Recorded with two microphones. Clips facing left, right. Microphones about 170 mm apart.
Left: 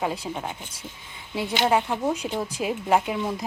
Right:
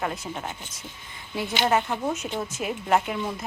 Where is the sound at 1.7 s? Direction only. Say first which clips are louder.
Left 2 dB; 15° left (ahead or behind).